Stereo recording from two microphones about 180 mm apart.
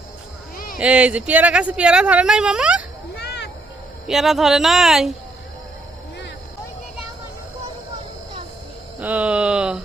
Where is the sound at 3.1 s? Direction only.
65° left (ahead or behind).